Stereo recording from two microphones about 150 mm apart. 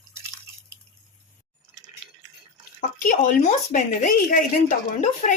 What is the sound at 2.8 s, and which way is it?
Speech, 65° left (ahead or behind).